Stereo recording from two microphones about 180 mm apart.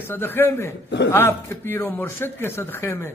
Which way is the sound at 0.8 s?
70° left (ahead or behind).